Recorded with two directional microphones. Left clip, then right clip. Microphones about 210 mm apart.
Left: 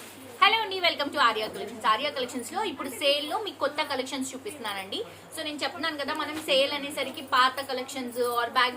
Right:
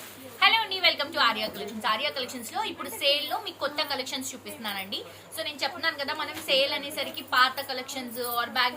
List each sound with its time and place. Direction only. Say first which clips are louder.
0.3 s a woman's voice: even; 15° left (ahead or behind)